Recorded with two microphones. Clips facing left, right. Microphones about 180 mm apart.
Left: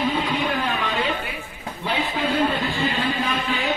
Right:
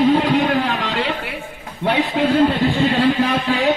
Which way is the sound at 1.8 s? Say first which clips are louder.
Right 7 dB; 80° right.